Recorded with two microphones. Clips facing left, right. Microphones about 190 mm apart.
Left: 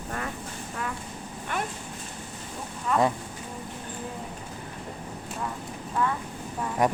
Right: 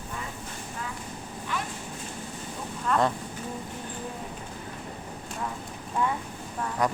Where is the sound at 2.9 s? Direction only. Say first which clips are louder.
Left 1 dB; 5° left (ahead or behind).